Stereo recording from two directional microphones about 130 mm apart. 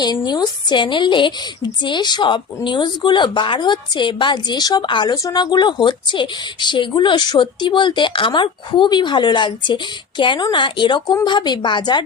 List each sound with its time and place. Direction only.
0.0 s a woman's voice: 35° left (ahead or behind)